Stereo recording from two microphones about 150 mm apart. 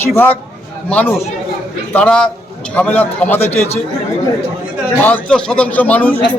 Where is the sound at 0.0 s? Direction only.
15° left (ahead or behind).